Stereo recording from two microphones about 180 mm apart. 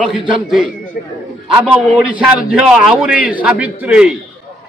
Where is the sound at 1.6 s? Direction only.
5° right (ahead or behind).